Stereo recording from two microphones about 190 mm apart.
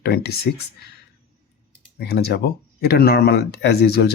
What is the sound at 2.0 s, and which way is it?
Speech, 60° left (ahead or behind).